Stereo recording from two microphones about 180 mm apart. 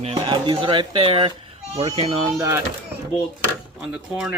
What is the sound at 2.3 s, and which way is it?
Speech, 15° right (ahead or behind).